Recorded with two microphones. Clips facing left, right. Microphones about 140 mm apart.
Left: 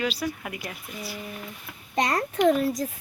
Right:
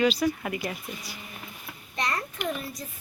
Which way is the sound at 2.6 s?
90° left.